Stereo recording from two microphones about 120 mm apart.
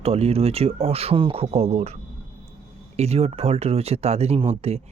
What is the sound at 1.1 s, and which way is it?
Speech, 45° right (ahead or behind).